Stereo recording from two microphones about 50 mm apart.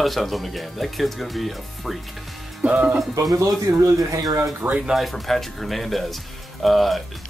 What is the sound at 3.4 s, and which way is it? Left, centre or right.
Speech, right.